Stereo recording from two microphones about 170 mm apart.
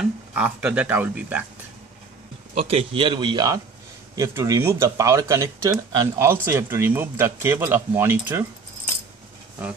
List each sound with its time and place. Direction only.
0.0 s speech: 10° right (ahead or behind)
2.5 s a man's voice: 35° right (ahead or behind); by 8.5 s 15° right (ahead or behind)